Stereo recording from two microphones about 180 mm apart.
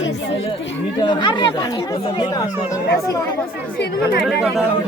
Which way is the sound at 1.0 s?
25° left (ahead or behind).